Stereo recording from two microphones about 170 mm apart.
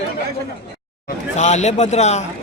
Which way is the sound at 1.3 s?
45° left (ahead or behind).